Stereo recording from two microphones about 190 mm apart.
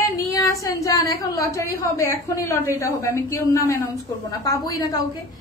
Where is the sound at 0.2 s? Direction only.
15° left (ahead or behind).